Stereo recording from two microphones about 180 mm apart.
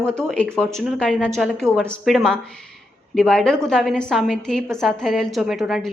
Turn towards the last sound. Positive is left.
turn(degrees=0)  # may be behind; listen again after turning